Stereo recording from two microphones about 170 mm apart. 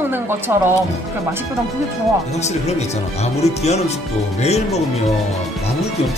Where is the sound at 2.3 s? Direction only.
40° left (ahead or behind).